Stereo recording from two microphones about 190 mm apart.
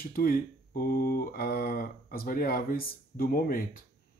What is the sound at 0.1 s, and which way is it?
Speech, 50° left (ahead or behind).